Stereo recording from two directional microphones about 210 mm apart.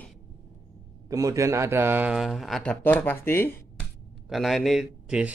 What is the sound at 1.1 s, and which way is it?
Speech, 15° right (ahead or behind).